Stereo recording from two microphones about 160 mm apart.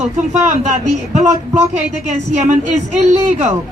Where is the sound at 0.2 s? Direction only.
50° right (ahead or behind).